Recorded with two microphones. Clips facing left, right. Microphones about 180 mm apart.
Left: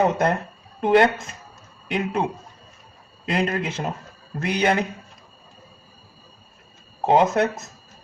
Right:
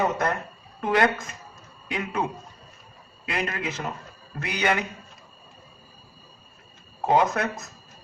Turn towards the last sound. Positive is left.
turn(degrees=25)  # may be behind; listen again after turning